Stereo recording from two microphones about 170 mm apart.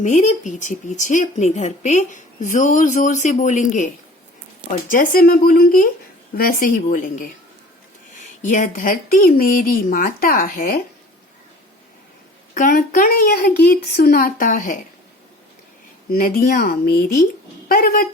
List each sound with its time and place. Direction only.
0.0 s speech: 45° left (ahead or behind)
4.9 s speech: 55° left (ahead or behind)
8.4 s speech: 50° left (ahead or behind)
12.5 s speech: 55° left (ahead or behind)
16.0 s speech: 60° left (ahead or behind)